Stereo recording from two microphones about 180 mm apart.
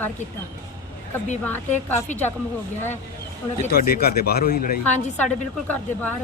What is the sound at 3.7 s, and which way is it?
Speech, 60° left (ahead or behind).